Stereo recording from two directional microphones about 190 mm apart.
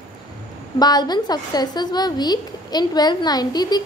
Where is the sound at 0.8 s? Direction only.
20° left (ahead or behind).